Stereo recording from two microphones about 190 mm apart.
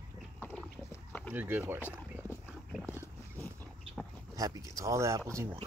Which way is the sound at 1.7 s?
10° left (ahead or behind).